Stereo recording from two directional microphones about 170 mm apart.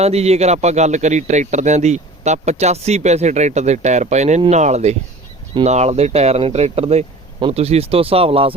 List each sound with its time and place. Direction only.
0.0 s speech: 40° right (ahead or behind)